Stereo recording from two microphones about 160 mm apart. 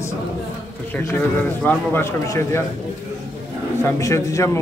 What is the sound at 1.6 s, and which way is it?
Speech, 10° left (ahead or behind).